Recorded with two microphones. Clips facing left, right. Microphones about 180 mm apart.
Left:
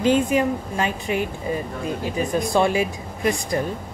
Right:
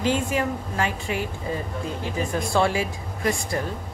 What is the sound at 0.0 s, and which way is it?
Speech, 20° left (ahead or behind).